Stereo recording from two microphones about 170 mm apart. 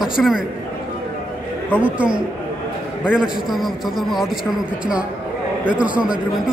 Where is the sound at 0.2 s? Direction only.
5° left (ahead or behind).